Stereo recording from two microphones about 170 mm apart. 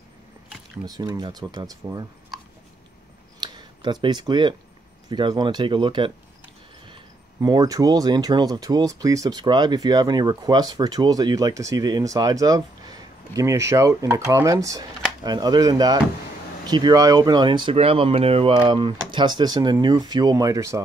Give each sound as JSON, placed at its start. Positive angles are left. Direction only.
{"t": 0.8, "sound": "speech", "side_deg": -25}
{"t": 3.3, "sound": "a sound", "side_deg": -25}
{"t": 5.1, "sound": "speech", "side_deg": -25}
{"t": 7.4, "sound": "speech", "side_deg": -20}